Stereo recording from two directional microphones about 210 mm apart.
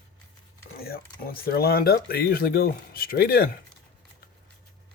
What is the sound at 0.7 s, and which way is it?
Speech, 45° left (ahead or behind).